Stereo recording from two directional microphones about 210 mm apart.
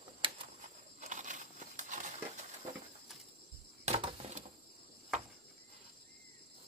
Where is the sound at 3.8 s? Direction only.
30° right (ahead or behind).